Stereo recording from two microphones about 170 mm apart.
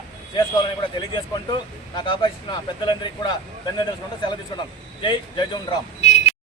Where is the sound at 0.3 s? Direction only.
25° left (ahead or behind).